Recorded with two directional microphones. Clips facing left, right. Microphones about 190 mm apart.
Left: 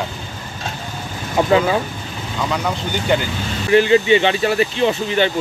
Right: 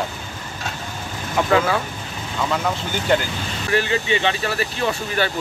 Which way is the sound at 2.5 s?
Centre (ahead or behind).